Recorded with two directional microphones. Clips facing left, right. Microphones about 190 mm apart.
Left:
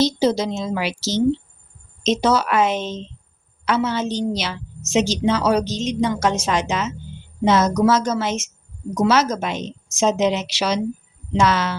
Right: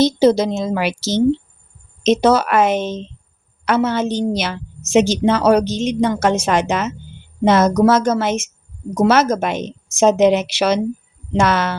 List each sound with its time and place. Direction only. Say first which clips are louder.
0.0 s a woman's voice: right 5 dB; 55° right (ahead or behind)